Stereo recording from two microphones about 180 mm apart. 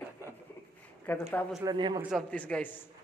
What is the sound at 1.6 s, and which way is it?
Speech, 25° right (ahead or behind).